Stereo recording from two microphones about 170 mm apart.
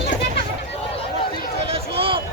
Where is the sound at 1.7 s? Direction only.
30° right (ahead or behind).